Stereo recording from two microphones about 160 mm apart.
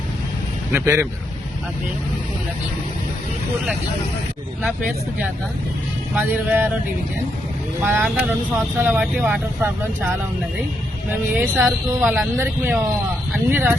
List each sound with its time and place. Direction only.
0.7 s speech: 15° right (ahead or behind)
6.1 s speech: 10° right (ahead or behind)
7.8 s speech: 10° right (ahead or behind)
11.1 s speech: 10° right (ahead or behind)